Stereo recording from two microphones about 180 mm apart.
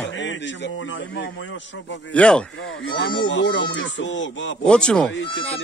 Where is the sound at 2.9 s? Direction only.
90° left.